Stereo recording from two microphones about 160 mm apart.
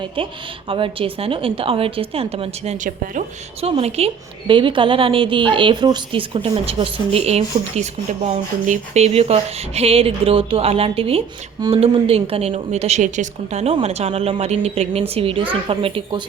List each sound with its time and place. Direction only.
0.2 s a woman's voice: 30° right (ahead or behind); by 3.2 s 55° right (ahead or behind)
3.6 s a woman's voice: 40° right (ahead or behind)